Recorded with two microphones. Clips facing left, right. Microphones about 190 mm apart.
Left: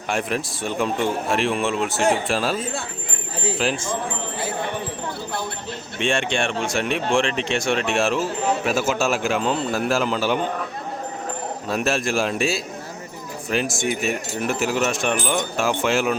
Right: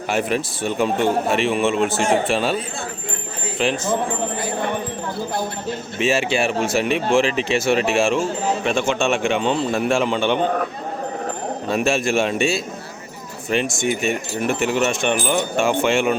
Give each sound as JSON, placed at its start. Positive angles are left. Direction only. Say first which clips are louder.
{"t": 0.1, "sound": "speech", "louder": "right 3 dB", "side_deg": 0}
{"t": 3.6, "sound": "speech", "louder": "right 3 dB", "side_deg": 0}
{"t": 6.0, "sound": "speech", "louder": "right 3 dB", "side_deg": -5}
{"t": 11.7, "sound": "speech", "louder": "right 3 dB", "side_deg": 0}